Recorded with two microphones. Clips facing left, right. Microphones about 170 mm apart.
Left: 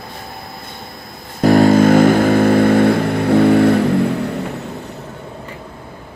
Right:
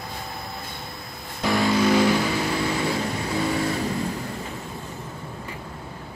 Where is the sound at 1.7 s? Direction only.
50° left (ahead or behind); by 4.6 s 70° left (ahead or behind).